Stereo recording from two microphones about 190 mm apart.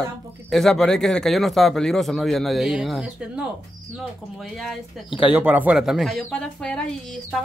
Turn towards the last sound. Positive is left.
turn(degrees=5)  # may be behind; listen again after turning